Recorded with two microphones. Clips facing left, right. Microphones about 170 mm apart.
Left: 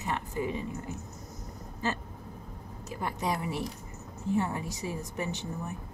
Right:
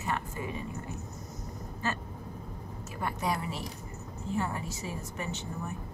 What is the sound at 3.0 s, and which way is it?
Speech, 15° left (ahead or behind).